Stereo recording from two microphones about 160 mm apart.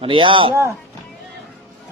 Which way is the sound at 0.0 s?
35° right (ahead or behind).